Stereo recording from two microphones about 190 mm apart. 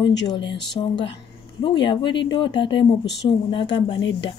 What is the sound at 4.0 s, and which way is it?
Speech, 70° left (ahead or behind).